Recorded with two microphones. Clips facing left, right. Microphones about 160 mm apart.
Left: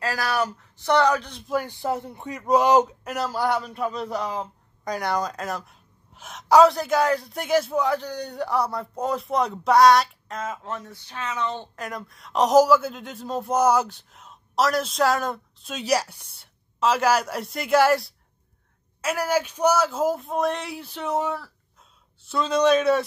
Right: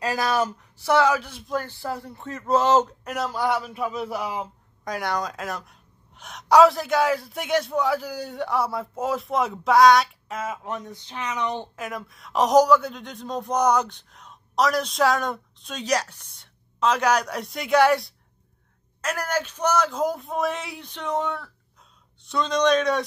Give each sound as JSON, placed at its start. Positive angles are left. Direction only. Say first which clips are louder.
{"t": 0.0, "sound": "speech", "louder": "right 2 dB", "side_deg": -20}
{"t": 0.7, "sound": "a man's voice", "louder": "even", "side_deg": -5}
{"t": 1.5, "sound": "speech", "louder": "left 3 dB", "side_deg": 15}
{"t": 3.1, "sound": "a man's voice", "louder": "even", "side_deg": 0}
{"t": 11.7, "sound": "a man's voice", "louder": "right 1 dB", "side_deg": 0}